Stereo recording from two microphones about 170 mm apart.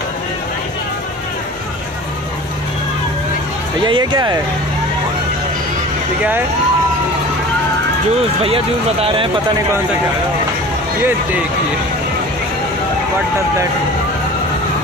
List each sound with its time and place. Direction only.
3.8 s speech: 25° right (ahead or behind)
8.4 s speech: 35° right (ahead or behind)